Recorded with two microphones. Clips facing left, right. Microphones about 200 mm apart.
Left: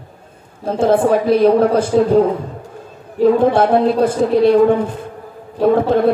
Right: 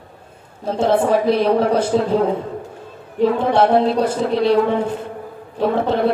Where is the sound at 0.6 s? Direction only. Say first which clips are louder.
Left 3 dB; 55° left (ahead or behind).